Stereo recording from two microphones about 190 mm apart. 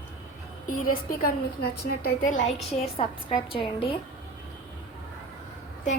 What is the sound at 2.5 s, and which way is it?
A woman's voice, 30° left (ahead or behind).